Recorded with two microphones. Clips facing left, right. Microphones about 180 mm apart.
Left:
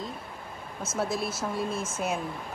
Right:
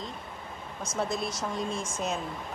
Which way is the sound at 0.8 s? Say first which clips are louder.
Left 1 dB; 5° left (ahead or behind).